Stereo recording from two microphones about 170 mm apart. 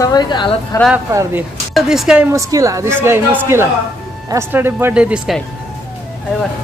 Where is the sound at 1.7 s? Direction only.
Centre (ahead or behind).